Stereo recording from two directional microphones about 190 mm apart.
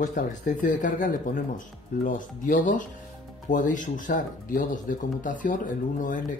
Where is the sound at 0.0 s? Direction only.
40° left (ahead or behind).